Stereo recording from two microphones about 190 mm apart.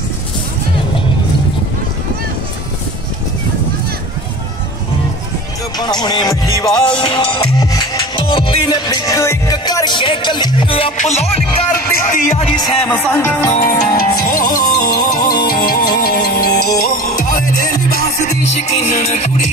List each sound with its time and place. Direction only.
5.8 s music: 20° left (ahead or behind)
11.7 s speech: 45° left (ahead or behind)
12.5 s music: 20° left (ahead or behind)
12.9 s music: 10° left (ahead or behind)
13.7 s speech: 50° left (ahead or behind)
14.6 s music: 20° left (ahead or behind)
15.4 s music: 50° left (ahead or behind)